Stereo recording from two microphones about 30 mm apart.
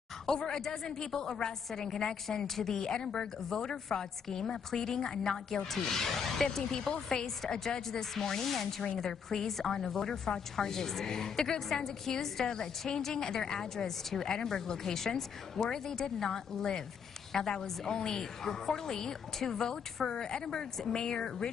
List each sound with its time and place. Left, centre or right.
0.3 s a woman's voice: centre
7.1 s a woman's voice: left